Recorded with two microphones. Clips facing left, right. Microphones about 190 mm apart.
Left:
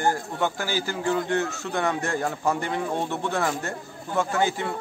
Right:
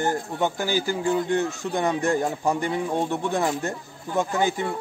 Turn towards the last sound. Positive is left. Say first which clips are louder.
# right 1 dB
turn(degrees=-15)  # may be behind; listen again after turning